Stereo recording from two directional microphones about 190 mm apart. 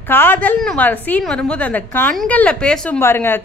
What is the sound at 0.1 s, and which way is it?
A woman's voice, 10° left (ahead or behind).